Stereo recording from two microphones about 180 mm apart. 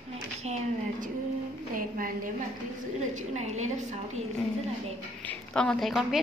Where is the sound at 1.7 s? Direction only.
50° right (ahead or behind).